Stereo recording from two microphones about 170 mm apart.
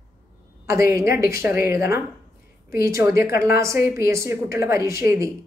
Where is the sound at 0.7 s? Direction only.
15° right (ahead or behind).